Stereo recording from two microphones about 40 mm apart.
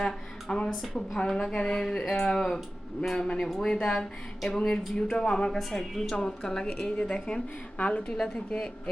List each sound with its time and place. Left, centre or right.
0.0 s a sound: centre
0.9 s speech: centre
5.5 s a woman's voice: centre
6.1 s speech: centre
6.9 s a woman's voice: left
8.0 s speech: centre